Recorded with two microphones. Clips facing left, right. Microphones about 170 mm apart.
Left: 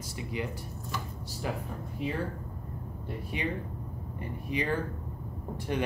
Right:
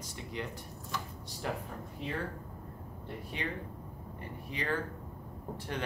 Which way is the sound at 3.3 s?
15° left (ahead or behind).